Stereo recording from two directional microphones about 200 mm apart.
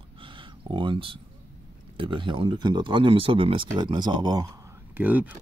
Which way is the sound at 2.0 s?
25° right (ahead or behind).